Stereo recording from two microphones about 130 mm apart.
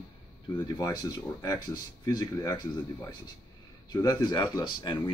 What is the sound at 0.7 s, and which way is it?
Speech, 25° left (ahead or behind).